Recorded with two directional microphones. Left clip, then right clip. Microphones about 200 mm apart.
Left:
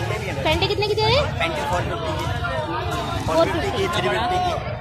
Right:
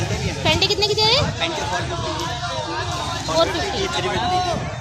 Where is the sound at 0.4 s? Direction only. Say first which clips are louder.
Right 3 dB; 5° right (ahead or behind).